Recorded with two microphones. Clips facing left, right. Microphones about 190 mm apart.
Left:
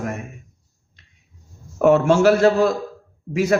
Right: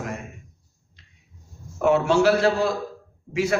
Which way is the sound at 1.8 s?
45° left (ahead or behind).